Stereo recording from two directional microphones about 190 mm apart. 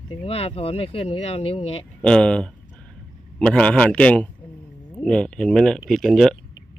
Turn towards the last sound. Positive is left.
turn(degrees=0)  # may be behind; listen again after turning